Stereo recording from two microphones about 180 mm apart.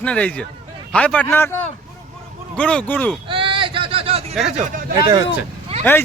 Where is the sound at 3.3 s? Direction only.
30° right (ahead or behind).